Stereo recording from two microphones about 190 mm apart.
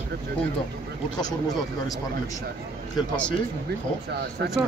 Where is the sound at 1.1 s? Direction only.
20° left (ahead or behind).